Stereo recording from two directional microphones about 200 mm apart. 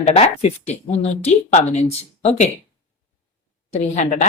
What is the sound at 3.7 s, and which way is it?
Speech, 35° left (ahead or behind).